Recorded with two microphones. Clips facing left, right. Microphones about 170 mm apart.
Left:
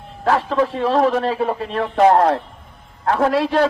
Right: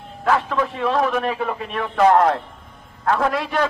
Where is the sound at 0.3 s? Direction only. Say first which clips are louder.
Left 3 dB; 30° left (ahead or behind).